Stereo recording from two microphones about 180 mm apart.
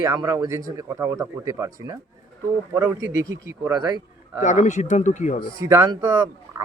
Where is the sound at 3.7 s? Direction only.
20° right (ahead or behind).